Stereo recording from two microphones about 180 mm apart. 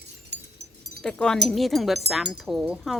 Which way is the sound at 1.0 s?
5° left (ahead or behind).